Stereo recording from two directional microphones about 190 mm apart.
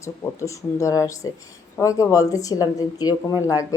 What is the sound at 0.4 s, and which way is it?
A woman's voice, 15° left (ahead or behind).